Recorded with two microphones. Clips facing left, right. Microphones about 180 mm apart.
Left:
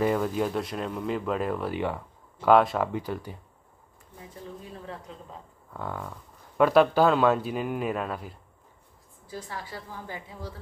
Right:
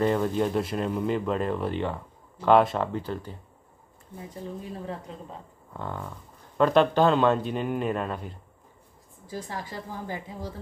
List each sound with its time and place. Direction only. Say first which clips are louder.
0.0 s speech: right 1 dB; 5° left (ahead or behind)
2.9 s speech: even; 10° left (ahead or behind)
5.8 s speech: even; 5° left (ahead or behind)
9.3 s a woman's voice: right 3 dB; 40° right (ahead or behind)